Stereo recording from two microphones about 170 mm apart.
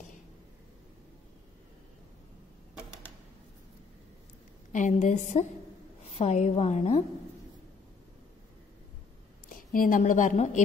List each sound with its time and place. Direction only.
4.7 s a woman's voice: 45° left (ahead or behind)
9.5 s a woman's voice: 55° left (ahead or behind)